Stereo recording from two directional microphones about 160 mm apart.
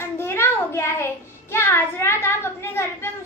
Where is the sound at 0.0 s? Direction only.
15° left (ahead or behind).